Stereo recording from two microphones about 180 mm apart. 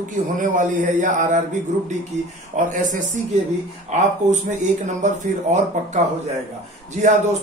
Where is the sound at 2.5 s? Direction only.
45° right (ahead or behind).